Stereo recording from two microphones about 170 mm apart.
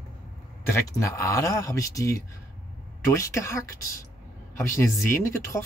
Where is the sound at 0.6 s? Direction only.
15° left (ahead or behind).